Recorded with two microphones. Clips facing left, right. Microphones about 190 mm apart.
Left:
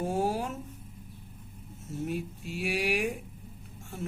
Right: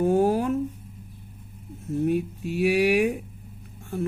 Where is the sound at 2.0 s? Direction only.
60° right (ahead or behind).